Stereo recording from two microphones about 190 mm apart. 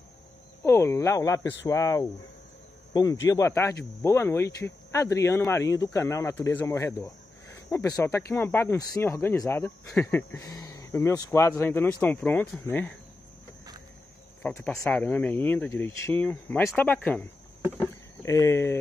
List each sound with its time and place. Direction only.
0.7 s speech: 15° left (ahead or behind)
14.4 s speech: 5° left (ahead or behind)